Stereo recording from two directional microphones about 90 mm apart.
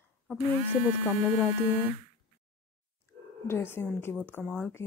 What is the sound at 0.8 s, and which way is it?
Speech, 15° right (ahead or behind).